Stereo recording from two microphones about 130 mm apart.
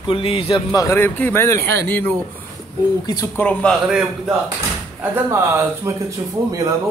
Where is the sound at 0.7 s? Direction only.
20° left (ahead or behind).